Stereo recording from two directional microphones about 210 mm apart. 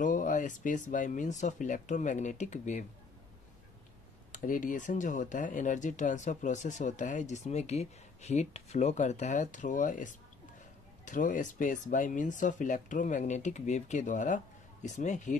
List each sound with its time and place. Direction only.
0.0 s speech: 40° left (ahead or behind)
4.3 s speech: 40° left (ahead or behind)